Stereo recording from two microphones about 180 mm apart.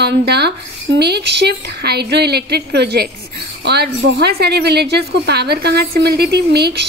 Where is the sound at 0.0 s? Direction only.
65° right (ahead or behind).